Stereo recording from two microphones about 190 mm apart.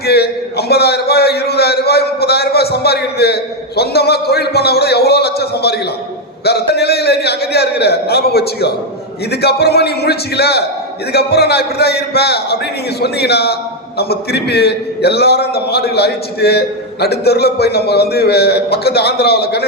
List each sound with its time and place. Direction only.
0.0 s a man's voice: 55° left (ahead or behind)